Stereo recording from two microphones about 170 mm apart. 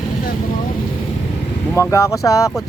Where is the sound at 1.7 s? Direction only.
20° left (ahead or behind).